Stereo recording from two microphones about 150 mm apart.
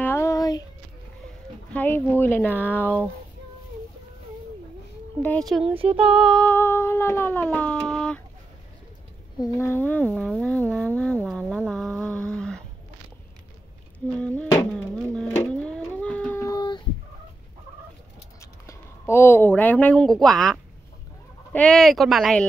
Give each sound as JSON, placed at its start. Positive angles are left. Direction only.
{"t": 0.0, "sound": "a sound", "side_deg": 15}
{"t": 1.7, "sound": "speech", "side_deg": 10}
{"t": 5.6, "sound": "child singing", "side_deg": -40}
{"t": 6.0, "sound": "speech", "side_deg": 0}
{"t": 6.4, "sound": "speech", "side_deg": 15}
{"t": 9.4, "sound": "speech", "side_deg": 15}
{"t": 11.0, "sound": "a sound", "side_deg": 5}
{"t": 13.9, "sound": "a sound", "side_deg": 10}
{"t": 16.3, "sound": "female singing", "side_deg": 25}
{"t": 18.4, "sound": "speech", "side_deg": 20}